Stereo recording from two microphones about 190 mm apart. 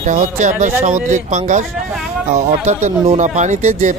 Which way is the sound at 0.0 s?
40° right (ahead or behind).